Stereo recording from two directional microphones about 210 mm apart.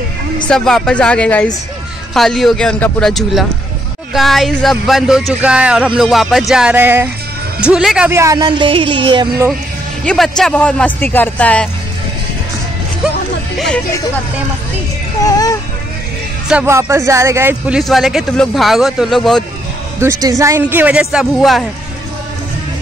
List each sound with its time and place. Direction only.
0.5 s a man's voice: centre (ahead or behind); by 9.5 s 20° right (ahead or behind)
10.0 s a man's voice: centre (ahead or behind)
15.2 s speech: 15° left (ahead or behind)
16.4 s a man's voice: 10° right (ahead or behind)
20.0 s speech: 15° right (ahead or behind)